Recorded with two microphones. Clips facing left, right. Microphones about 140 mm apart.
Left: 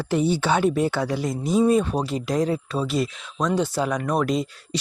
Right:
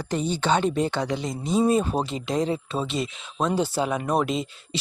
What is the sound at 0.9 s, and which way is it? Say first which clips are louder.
Speech: left 2 dB; 20° right (ahead or behind).